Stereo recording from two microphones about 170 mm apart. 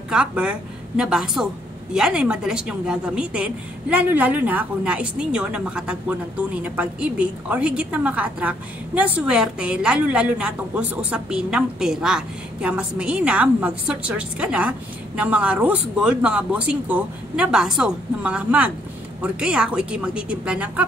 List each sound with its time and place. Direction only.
0.1 s a woman's voice: 5° right (ahead or behind)